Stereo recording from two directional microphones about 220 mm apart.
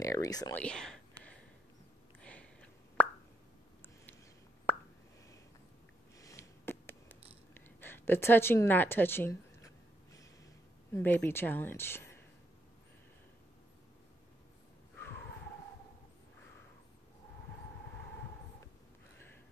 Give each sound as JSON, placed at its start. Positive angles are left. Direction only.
{"t": 0.0, "sound": "speech", "side_deg": 15}
{"t": 0.6, "sound": "whispering", "side_deg": 5}
{"t": 2.1, "sound": "plop", "side_deg": 5}
{"t": 4.7, "sound": "plop", "side_deg": 10}
{"t": 6.1, "sound": "a sound", "side_deg": 15}
{"t": 7.5, "sound": "speech", "side_deg": 10}
{"t": 10.9, "sound": "speech", "side_deg": 10}